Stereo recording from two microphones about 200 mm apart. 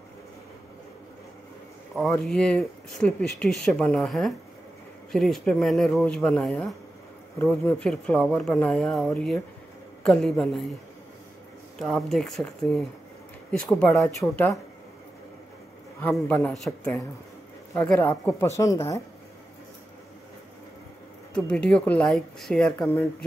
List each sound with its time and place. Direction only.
2.0 s speech: 5° left (ahead or behind)
11.8 s speech: centre (ahead or behind)
16.0 s speech: 10° left (ahead or behind)
21.3 s speech: 5° left (ahead or behind)